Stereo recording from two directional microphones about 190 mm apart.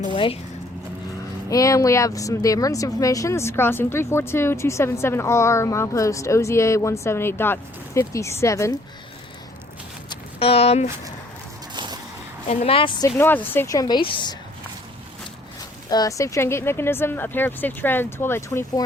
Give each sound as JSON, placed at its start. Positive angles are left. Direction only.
{"t": 0.1, "sound": "a woman's voice", "side_deg": 25}
{"t": 1.5, "sound": "speech", "side_deg": 15}
{"t": 10.1, "sound": "a sound", "side_deg": 30}
{"t": 11.7, "sound": "vehicle", "side_deg": -25}
{"t": 12.5, "sound": "a woman's voice", "side_deg": 35}
{"t": 13.1, "sound": "speech", "side_deg": 10}
{"t": 15.9, "sound": "speech", "side_deg": 20}